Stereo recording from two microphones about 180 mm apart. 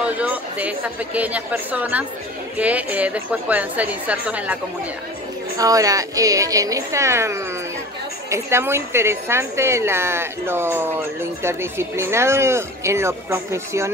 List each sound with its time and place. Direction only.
0.0 s a woman's voice: 10° right (ahead or behind)
5.6 s a woman's voice: 20° right (ahead or behind)